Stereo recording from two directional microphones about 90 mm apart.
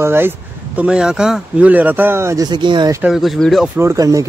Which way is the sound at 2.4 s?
55° right (ahead or behind).